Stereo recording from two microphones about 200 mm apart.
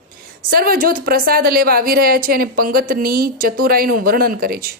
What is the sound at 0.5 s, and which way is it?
Speech, 45° right (ahead or behind).